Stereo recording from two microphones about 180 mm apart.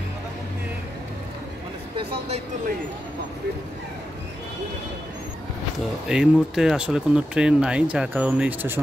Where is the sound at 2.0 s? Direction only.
30° right (ahead or behind).